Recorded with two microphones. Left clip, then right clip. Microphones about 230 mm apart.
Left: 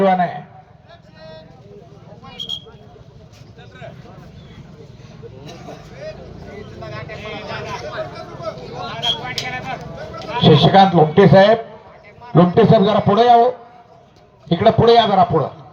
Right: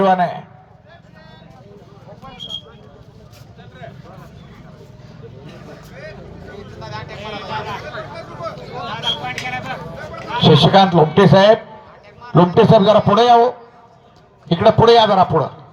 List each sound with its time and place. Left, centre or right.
0.0 s a man's voice: right
6.8 s speech: right
8.5 s a sound: centre
8.9 s vehicle: right
9.5 s a man's voice: right
14.5 s a man's voice: right